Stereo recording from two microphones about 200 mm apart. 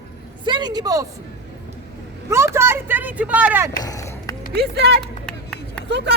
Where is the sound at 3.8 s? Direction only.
15° left (ahead or behind).